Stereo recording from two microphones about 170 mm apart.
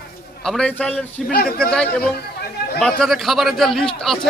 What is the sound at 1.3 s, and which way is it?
Speech, 60° left (ahead or behind).